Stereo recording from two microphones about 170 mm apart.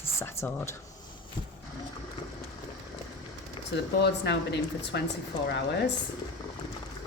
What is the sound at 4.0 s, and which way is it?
Speech, 80° left.